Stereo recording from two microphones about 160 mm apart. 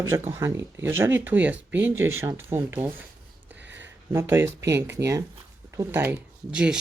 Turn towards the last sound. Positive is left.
turn(degrees=-5)  # may be behind; listen again after turning